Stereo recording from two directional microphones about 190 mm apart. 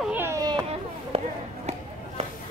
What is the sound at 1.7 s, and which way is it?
Chop, 35° right (ahead or behind).